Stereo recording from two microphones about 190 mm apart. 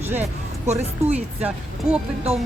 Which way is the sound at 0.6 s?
35° right (ahead or behind).